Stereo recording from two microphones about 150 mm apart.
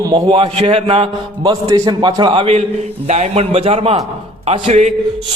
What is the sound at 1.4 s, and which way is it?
A man's voice, 25° right (ahead or behind).